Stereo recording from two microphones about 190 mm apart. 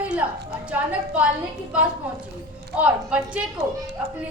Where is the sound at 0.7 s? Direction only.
5° right (ahead or behind).